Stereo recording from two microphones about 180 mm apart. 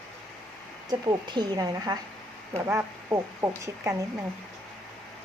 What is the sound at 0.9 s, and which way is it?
Speech, 25° right (ahead or behind).